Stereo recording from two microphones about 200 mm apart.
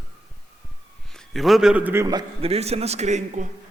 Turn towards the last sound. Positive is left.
turn(degrees=-35)  # may be behind; listen again after turning